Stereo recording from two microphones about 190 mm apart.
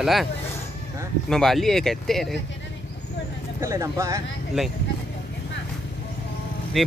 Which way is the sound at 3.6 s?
15° right (ahead or behind).